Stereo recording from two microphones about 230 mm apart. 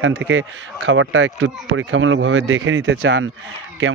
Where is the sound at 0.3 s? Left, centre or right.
Right.